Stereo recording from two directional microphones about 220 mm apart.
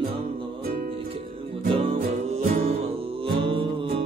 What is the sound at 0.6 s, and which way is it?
Music, 40° right (ahead or behind).